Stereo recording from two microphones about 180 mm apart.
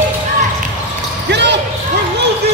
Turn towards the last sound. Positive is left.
turn(degrees=-75)  # may be behind; listen again after turning